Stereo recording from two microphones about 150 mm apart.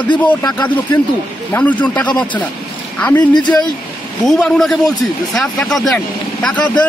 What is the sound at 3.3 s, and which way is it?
Speech, 30° left (ahead or behind).